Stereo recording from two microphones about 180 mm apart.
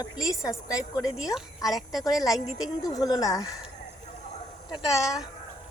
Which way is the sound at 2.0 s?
20° left (ahead or behind).